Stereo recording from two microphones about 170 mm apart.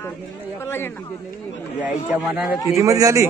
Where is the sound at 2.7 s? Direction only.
20° right (ahead or behind).